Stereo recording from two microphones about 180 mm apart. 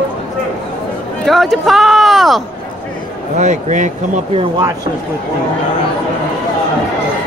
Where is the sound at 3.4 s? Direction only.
45° right (ahead or behind).